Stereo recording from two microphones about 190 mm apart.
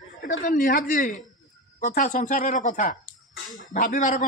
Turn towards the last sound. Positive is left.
turn(degrees=45)  # may be behind; listen again after turning